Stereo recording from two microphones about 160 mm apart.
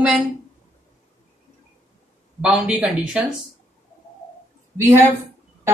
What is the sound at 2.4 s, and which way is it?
Speech, 5° right (ahead or behind).